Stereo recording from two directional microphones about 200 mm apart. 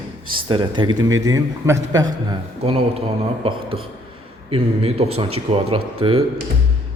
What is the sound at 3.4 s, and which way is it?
A man's voice, 30° right (ahead or behind).